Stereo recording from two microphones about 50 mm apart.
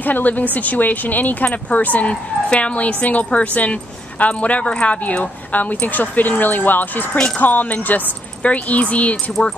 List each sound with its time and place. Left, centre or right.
0.0 s a woman's voice: left